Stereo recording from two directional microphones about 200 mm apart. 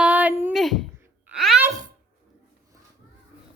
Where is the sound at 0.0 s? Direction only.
10° right (ahead or behind).